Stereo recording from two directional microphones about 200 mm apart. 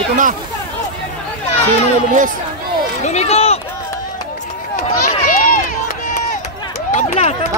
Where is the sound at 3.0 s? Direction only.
30° left (ahead or behind).